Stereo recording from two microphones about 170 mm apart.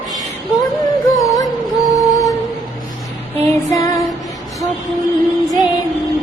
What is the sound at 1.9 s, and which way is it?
Music, 20° left (ahead or behind).